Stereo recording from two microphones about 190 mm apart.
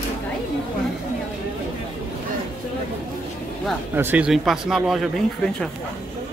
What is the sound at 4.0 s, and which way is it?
Speech, 10° right (ahead or behind).